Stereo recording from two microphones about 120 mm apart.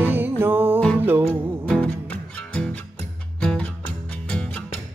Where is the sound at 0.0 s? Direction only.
15° right (ahead or behind).